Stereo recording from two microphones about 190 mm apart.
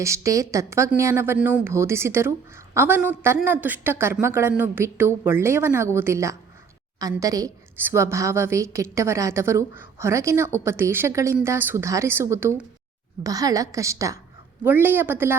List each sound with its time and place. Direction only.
0.0 s a woman's voice: 15° right (ahead or behind)